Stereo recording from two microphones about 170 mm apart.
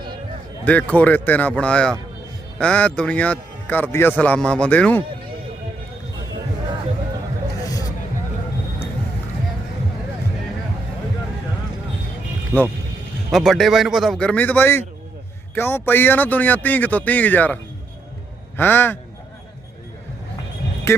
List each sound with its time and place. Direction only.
0.6 s speech: 10° left (ahead or behind)
7.6 s hubbub: 20° left (ahead or behind)
13.3 s a man's voice: centre (ahead or behind)
20.9 s speech: 15° left (ahead or behind)